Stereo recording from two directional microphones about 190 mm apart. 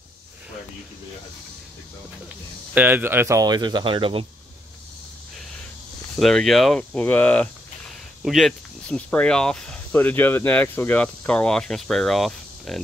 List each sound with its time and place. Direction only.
2.7 s speech: 10° right (ahead or behind); by 4.3 s 30° right (ahead or behind)
6.1 s speech: centre (ahead or behind)